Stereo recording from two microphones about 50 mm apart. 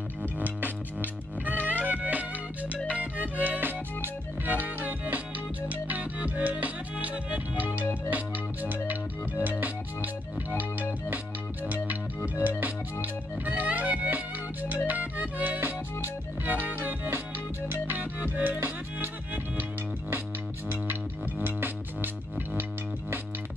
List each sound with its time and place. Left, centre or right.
1.6 s music: right
12.4 s music: right
20.7 s music: right